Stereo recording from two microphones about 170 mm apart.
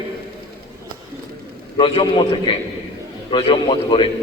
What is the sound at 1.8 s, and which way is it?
A man's voice, 30° left (ahead or behind).